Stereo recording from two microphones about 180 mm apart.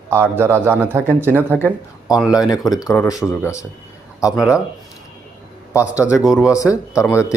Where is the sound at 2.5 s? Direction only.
Centre (ahead or behind).